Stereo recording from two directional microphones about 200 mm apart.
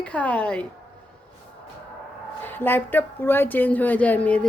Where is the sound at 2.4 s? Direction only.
10° left (ahead or behind).